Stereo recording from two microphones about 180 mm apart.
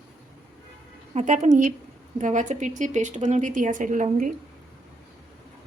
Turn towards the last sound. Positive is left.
turn(degrees=-45)  # may be behind; listen again after turning